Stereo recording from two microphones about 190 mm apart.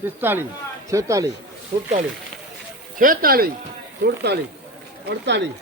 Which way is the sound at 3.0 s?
50° right (ahead or behind).